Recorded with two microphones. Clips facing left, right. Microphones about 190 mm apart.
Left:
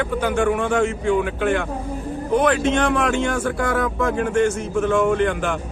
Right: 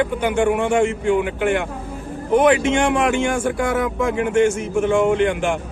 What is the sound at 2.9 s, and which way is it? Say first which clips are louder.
A man's voice: right 2 dB; 15° right (ahead or behind).